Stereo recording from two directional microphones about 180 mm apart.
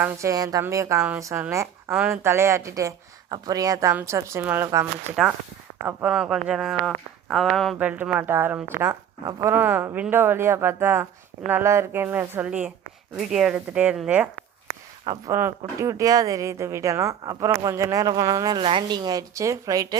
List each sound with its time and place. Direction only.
0.0 s speech: 15° right (ahead or behind)
15.0 s speech: 25° right (ahead or behind)